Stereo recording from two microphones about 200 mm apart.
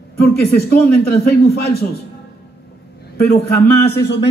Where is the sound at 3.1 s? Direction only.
50° left (ahead or behind).